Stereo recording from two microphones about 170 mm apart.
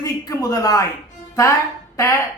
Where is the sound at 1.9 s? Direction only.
15° left (ahead or behind).